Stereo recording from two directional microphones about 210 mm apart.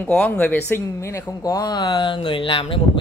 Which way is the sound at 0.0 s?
5° left (ahead or behind).